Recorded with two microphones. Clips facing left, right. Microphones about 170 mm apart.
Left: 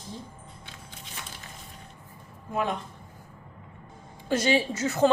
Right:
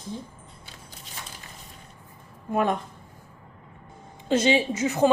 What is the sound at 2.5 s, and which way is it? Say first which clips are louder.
Speech: right 5 dB; 55° right (ahead or behind).